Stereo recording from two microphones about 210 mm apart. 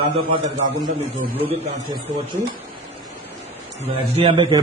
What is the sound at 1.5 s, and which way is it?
Speech, 30° right (ahead or behind).